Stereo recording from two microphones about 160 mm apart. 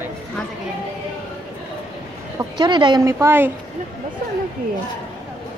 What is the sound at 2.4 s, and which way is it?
A woman's voice, 30° right (ahead or behind).